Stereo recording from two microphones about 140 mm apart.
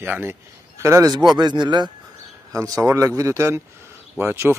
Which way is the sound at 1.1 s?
30° right (ahead or behind).